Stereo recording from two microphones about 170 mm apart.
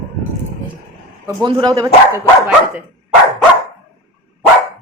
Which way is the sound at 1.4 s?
20° right (ahead or behind).